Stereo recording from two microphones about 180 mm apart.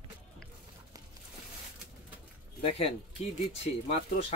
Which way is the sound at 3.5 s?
35° left (ahead or behind).